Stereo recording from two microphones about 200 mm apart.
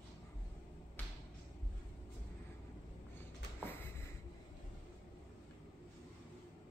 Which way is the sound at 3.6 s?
10° left (ahead or behind).